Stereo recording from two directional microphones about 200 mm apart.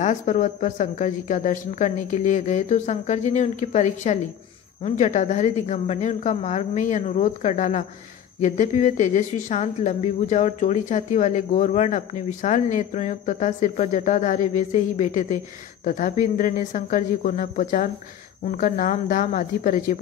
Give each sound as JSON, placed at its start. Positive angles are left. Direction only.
{"t": 0.0, "sound": "a woman's voice", "side_deg": 40}